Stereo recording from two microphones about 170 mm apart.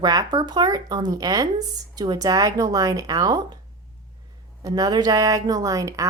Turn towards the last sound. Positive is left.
turn(degrees=-20)  # may be behind; listen again after turning